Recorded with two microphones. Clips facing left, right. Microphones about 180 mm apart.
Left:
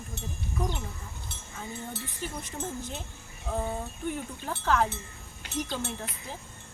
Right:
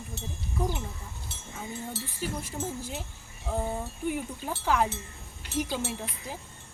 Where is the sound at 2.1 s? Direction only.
10° right (ahead or behind).